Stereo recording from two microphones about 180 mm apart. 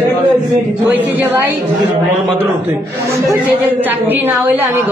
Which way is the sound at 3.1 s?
15° right (ahead or behind).